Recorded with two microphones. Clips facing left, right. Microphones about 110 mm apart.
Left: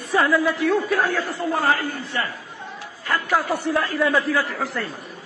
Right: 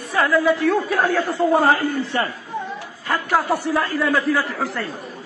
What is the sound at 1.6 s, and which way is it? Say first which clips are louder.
Speech: right 4 dB; 30° right (ahead or behind).